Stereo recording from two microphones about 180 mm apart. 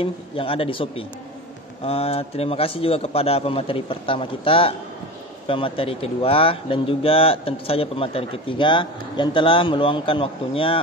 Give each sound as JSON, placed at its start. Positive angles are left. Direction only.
{"t": 0.0, "sound": "a man's voice", "side_deg": 30}